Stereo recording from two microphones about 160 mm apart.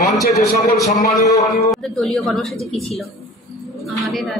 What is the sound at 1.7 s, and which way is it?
A woman's voice, centre (ahead or behind).